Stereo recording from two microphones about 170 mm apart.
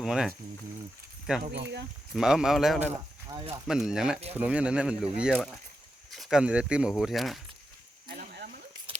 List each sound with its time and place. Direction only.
0.0 s speech: centre (ahead or behind)
1.5 s speech: 90° right
2.1 s speech: 5° right (ahead or behind)
3.2 s speech: 25° right (ahead or behind)
3.8 s speech: 5° right (ahead or behind)
8.0 s snake: 65° right (ahead or behind)